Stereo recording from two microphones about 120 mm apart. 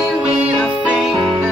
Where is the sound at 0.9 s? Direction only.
5° right (ahead or behind).